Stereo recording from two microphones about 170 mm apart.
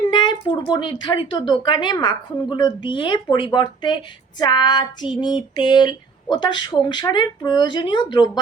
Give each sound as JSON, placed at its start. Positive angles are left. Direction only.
{"t": 0.1, "sound": "speech", "side_deg": 30}